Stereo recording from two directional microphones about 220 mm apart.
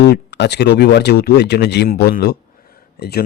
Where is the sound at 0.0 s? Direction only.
50° left (ahead or behind).